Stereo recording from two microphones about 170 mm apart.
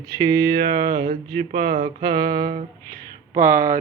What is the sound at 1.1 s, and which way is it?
Speech, 65° right (ahead or behind).